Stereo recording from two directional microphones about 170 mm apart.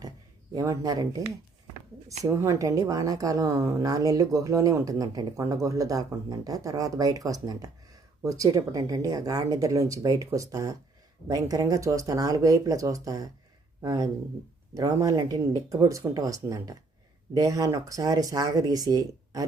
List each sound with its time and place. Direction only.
0.5 s a woman's voice: 20° right (ahead or behind)
2.2 s a woman's voice: 15° right (ahead or behind)